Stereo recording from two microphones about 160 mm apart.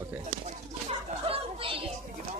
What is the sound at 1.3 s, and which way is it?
Children playing, 35° right (ahead or behind).